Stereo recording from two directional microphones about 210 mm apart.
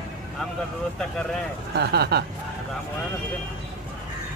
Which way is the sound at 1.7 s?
50° right (ahead or behind).